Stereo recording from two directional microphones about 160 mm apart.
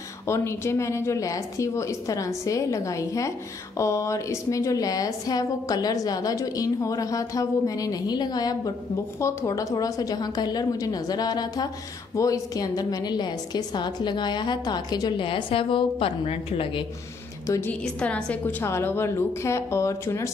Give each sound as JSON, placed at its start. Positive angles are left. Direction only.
{"t": 0.3, "sound": "a woman's voice", "side_deg": 15}
{"t": 17.5, "sound": "a woman's voice", "side_deg": 10}